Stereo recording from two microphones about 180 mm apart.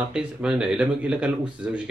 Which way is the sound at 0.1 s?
5° right (ahead or behind).